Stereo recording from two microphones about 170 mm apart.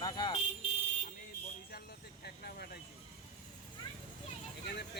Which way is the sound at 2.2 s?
65° left (ahead or behind).